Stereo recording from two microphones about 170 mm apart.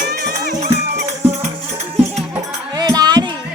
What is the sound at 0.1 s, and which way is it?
Music, 60° right (ahead or behind).